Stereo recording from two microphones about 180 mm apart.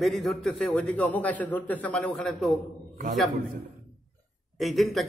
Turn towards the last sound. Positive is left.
turn(degrees=0)  # may be behind; listen again after turning